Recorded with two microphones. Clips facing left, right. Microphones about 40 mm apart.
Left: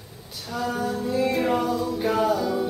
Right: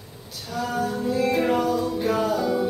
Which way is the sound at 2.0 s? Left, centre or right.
Centre.